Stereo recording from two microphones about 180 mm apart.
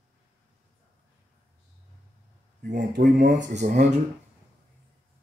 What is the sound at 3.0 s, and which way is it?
Speech, 75° right (ahead or behind).